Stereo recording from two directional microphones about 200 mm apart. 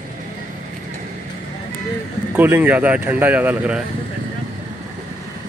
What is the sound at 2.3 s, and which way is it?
Speech, 10° right (ahead or behind).